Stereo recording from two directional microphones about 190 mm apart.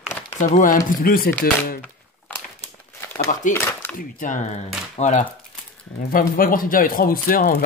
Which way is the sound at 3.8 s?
10° left (ahead or behind).